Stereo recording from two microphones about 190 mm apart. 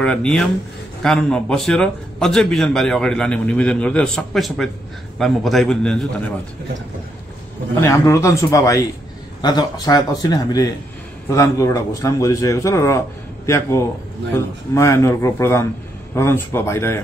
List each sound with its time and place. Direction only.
0.0 s a man's voice: 5° left (ahead or behind)
7.8 s a man's voice: 15° left (ahead or behind)